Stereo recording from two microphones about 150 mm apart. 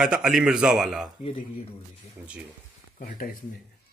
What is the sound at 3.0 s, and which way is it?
Speech, 65° left (ahead or behind).